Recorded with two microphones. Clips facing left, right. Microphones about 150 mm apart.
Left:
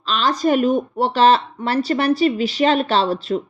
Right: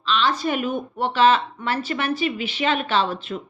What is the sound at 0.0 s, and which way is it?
A woman's voice, 40° left (ahead or behind).